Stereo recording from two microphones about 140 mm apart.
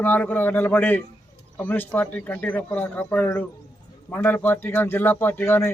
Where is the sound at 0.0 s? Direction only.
10° left (ahead or behind).